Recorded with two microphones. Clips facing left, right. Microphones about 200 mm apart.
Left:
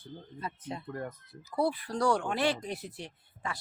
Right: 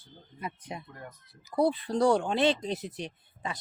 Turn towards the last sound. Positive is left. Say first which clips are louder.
# right 2 dB
turn(degrees=-20)  # may be behind; listen again after turning